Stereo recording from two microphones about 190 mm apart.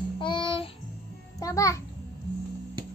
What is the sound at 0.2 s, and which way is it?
Music, 25° left (ahead or behind).